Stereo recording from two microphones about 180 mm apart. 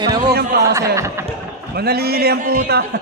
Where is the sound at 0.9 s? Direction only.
15° right (ahead or behind).